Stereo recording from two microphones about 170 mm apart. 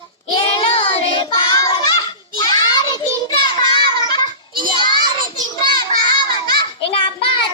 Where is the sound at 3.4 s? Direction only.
25° left (ahead or behind).